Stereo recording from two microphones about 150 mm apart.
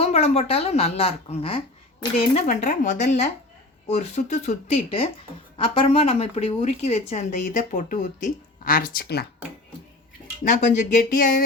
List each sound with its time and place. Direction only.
0.0 s a woman's voice: 45° left (ahead or behind); by 9.2 s 85° left
10.4 s speech: 55° left (ahead or behind); by 11.4 s 70° left (ahead or behind)